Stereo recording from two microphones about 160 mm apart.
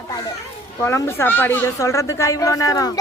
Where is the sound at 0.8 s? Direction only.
15° left (ahead or behind).